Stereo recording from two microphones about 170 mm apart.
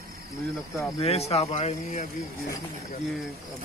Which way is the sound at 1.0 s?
40° left (ahead or behind).